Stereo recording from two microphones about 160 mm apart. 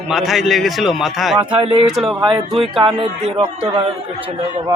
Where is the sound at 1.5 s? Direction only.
35° right (ahead or behind).